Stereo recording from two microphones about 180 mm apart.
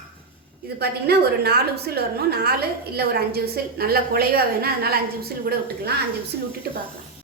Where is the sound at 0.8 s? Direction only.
60° right (ahead or behind).